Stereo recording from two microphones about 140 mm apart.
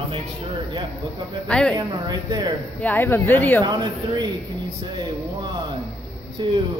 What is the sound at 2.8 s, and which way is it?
Speech, 15° left (ahead or behind).